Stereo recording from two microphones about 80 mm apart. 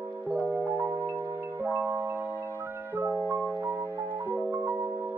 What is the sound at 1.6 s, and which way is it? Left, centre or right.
Marimba, right.